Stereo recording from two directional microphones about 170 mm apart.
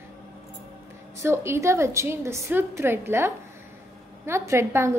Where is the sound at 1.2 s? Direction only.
15° right (ahead or behind).